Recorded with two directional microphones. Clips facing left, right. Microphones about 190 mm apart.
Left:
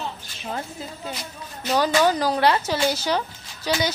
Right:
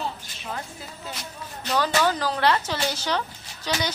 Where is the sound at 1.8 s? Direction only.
15° left (ahead or behind).